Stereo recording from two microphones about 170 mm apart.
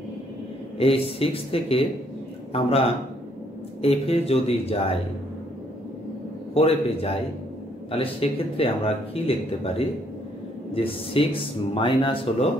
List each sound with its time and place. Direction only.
0.7 s speech: 35° left (ahead or behind)
6.5 s speech: 35° left (ahead or behind)
10.7 s speech: 35° left (ahead or behind)